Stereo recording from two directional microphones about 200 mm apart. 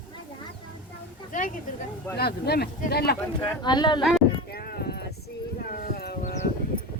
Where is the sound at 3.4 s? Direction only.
20° left (ahead or behind).